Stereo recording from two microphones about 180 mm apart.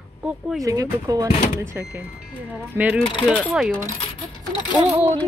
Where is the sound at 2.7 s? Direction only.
10° right (ahead or behind).